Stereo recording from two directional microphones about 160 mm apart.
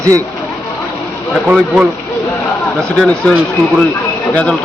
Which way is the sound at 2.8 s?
5° left (ahead or behind).